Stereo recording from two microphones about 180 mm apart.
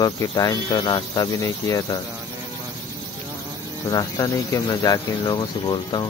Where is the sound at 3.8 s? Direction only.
20° left (ahead or behind).